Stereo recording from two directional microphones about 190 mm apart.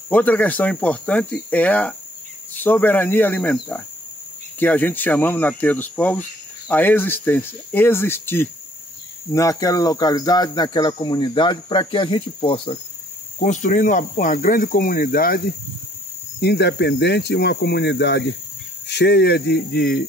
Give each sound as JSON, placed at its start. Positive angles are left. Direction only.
{"t": 0.1, "sound": "speech", "side_deg": 10}
{"t": 13.4, "sound": "speech", "side_deg": 40}
{"t": 16.3, "sound": "speech", "side_deg": 60}